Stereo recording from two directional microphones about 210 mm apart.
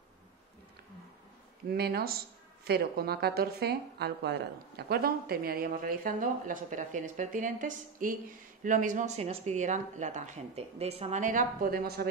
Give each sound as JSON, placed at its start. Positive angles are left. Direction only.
{"t": 1.7, "sound": "speech", "side_deg": -45}